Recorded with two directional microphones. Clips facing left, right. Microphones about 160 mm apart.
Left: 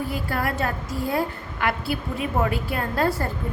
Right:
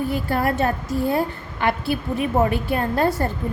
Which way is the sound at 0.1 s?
25° right (ahead or behind).